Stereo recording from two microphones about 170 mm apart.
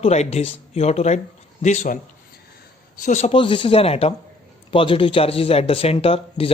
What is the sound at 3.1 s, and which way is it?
Speech, 40° left (ahead or behind).